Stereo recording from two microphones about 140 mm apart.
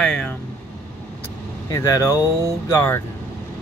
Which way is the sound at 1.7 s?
25° left (ahead or behind).